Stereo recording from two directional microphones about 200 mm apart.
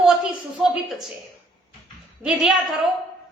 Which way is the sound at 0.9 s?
Centre (ahead or behind).